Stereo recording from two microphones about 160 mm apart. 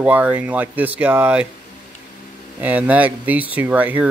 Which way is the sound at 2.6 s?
10° right (ahead or behind).